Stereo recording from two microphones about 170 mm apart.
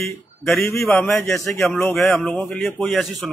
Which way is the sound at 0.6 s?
15° left (ahead or behind).